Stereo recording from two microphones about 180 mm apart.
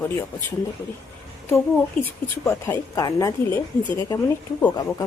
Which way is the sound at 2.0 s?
10° left (ahead or behind).